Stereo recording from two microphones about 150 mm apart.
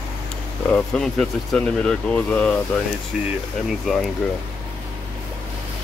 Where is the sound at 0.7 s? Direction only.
5° left (ahead or behind).